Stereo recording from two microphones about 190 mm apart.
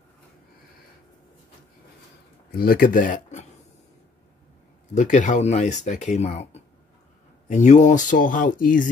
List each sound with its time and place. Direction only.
2.5 s speech: 50° left (ahead or behind)
4.9 s speech: 40° left (ahead or behind)